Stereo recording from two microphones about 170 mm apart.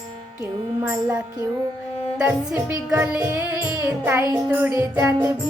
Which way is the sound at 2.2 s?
5° right (ahead or behind).